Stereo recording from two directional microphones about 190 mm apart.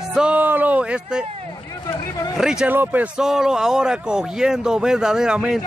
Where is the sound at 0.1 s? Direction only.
5° right (ahead or behind).